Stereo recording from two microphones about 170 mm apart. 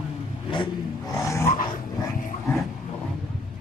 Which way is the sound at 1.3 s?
15° left (ahead or behind).